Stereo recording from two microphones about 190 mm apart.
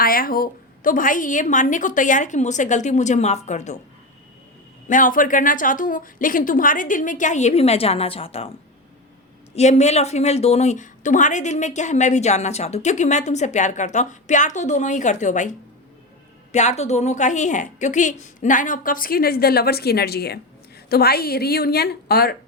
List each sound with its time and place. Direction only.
0.0 s a woman's voice: 50° left (ahead or behind)
4.9 s a woman's voice: 45° left (ahead or behind)
9.6 s a woman's voice: 35° left (ahead or behind); by 22.4 s 55° left (ahead or behind)